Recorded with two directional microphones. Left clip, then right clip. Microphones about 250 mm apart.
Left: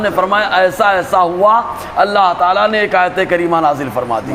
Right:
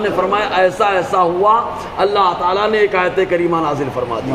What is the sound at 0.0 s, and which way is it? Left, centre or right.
A man's voice, left.